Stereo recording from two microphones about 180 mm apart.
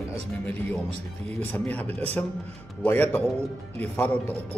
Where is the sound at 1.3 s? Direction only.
10° left (ahead or behind).